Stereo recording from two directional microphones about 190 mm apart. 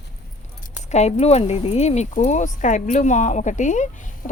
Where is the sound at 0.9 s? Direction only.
35° left (ahead or behind).